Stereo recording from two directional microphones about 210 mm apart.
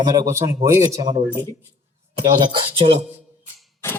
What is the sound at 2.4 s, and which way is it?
Speech, 25° right (ahead or behind).